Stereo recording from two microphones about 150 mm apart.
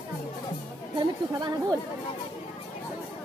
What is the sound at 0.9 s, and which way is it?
Speech, 25° right (ahead or behind).